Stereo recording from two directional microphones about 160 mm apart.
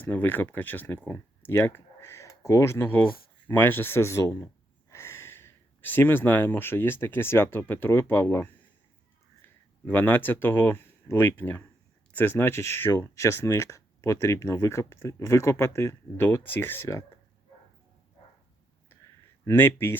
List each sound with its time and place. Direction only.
0.0 s speech: 10° left (ahead or behind)
9.8 s speech: 10° left (ahead or behind)
19.5 s speech: 15° left (ahead or behind)